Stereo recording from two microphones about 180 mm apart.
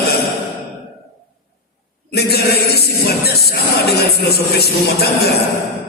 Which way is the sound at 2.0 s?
60° left (ahead or behind).